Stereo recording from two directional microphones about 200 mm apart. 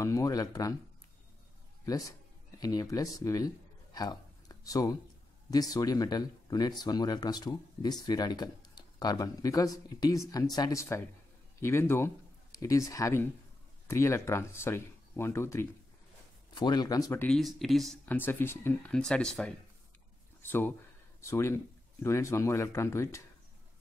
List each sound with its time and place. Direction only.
0.0 s speech: 15° left (ahead or behind)
1.9 s speech: 15° left (ahead or behind)
3.9 s a sound: 20° left (ahead or behind)
5.5 s speech: 20° left (ahead or behind)